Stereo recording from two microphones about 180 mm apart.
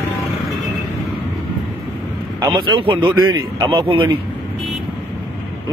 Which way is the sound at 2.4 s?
25° right (ahead or behind).